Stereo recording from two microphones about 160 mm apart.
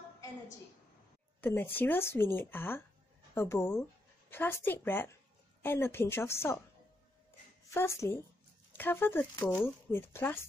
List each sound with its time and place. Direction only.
1.4 s speech: 15° left (ahead or behind)
7.7 s speech: 15° left (ahead or behind)